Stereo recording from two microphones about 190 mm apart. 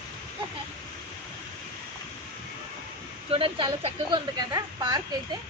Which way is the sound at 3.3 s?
30° right (ahead or behind).